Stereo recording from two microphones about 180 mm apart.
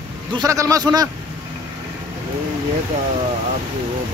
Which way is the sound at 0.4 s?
20° right (ahead or behind).